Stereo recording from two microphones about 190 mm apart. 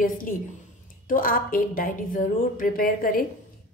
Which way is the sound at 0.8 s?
45° left (ahead or behind).